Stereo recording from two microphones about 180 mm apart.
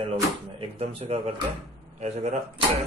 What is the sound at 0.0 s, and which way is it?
Speech, 35° right (ahead or behind).